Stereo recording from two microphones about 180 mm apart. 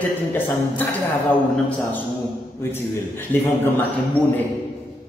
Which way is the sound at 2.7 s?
10° left (ahead or behind).